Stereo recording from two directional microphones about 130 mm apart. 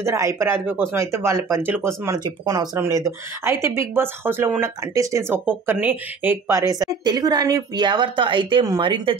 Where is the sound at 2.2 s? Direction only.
30° right (ahead or behind).